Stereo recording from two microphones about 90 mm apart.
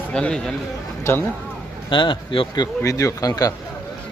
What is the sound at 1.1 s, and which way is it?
Speech, 30° left (ahead or behind).